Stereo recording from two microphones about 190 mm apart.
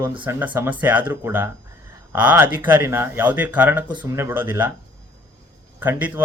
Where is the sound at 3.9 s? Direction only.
25° right (ahead or behind).